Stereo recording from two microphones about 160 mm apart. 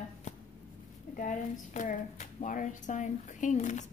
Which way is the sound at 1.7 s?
50° left (ahead or behind).